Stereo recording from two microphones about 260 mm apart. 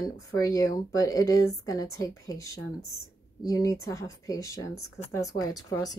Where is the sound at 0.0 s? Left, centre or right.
Centre.